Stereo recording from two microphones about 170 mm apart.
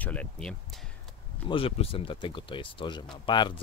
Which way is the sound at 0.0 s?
10° left (ahead or behind).